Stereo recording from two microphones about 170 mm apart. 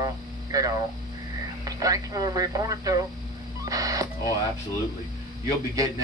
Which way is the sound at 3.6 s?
20° right (ahead or behind).